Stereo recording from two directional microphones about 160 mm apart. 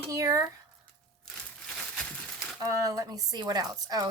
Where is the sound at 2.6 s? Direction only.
20° right (ahead or behind).